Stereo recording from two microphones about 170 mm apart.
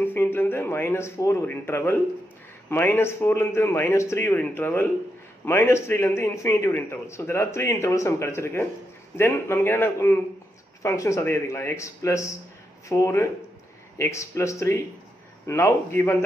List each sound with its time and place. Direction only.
0.0 s a man's voice: 10° left (ahead or behind)